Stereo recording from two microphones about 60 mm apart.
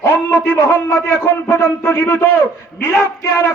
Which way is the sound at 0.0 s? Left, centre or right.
Left.